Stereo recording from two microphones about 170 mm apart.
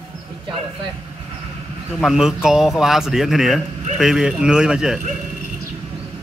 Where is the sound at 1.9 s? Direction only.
Centre (ahead or behind).